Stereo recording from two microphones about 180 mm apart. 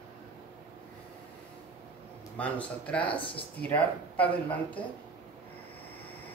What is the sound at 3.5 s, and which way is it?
Speech, 10° left (ahead or behind).